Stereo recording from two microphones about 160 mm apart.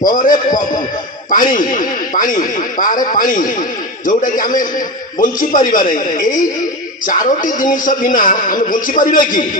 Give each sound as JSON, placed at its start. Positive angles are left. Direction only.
{"t": 0.0, "sound": "speech", "side_deg": 60}